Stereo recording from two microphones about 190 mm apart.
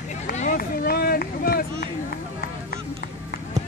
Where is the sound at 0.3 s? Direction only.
40° left (ahead or behind).